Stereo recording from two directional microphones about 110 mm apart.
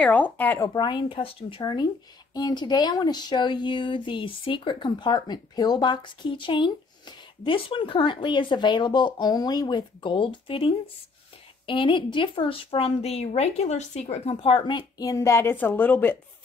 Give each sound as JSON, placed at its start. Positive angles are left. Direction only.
{"t": 0.0, "sound": "a woman's voice", "side_deg": 15}
{"t": 0.7, "sound": "speech", "side_deg": 45}
{"t": 15.0, "sound": "a woman's voice", "side_deg": 30}